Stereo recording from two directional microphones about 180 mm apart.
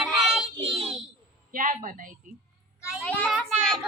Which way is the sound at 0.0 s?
Centre (ahead or behind).